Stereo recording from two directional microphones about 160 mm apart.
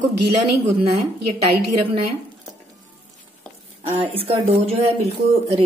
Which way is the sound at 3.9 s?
35° right (ahead or behind).